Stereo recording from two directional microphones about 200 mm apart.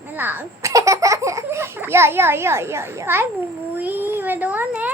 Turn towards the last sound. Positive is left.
turn(degrees=-5)  # may be behind; listen again after turning